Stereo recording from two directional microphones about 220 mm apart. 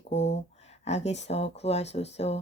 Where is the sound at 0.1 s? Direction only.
30° left (ahead or behind).